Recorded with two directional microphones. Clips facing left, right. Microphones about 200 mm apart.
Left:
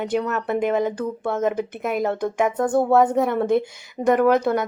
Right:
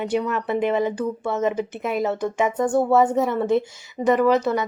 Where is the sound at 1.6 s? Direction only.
50° left (ahead or behind).